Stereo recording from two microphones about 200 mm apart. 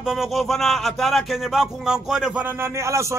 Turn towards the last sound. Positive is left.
turn(degrees=-15)  # may be behind; listen again after turning